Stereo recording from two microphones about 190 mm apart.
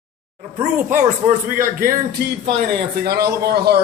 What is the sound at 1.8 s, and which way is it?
Speech, 50° right (ahead or behind).